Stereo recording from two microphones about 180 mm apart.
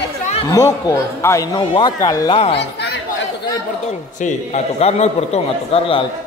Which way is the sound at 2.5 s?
70° left (ahead or behind).